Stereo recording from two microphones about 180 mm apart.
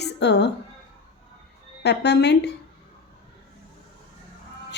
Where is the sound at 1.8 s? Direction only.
70° left (ahead or behind).